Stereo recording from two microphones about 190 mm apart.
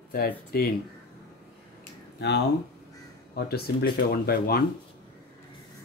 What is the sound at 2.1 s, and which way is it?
Speech, 65° left (ahead or behind).